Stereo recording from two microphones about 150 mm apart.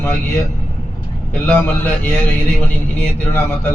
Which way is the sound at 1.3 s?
10° left (ahead or behind).